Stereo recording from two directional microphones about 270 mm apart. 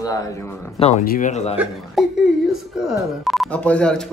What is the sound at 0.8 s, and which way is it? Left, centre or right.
Speech, left.